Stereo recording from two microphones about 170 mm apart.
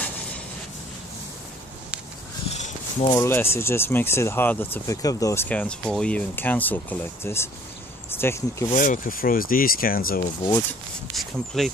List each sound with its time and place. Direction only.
2.5 s a sound: 40° left (ahead or behind)
3.2 s speech: 15° left (ahead or behind)
8.7 s rub: 50° left (ahead or behind)
11.1 s speech: centre (ahead or behind)